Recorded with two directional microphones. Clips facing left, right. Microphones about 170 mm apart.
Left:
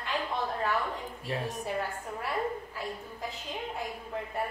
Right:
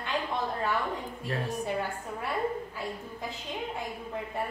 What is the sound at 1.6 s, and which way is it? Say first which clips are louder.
Speech: right 2 dB; centre (ahead or behind).